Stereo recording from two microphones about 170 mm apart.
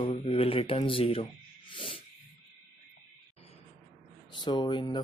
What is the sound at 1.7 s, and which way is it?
Snort, 35° left (ahead or behind).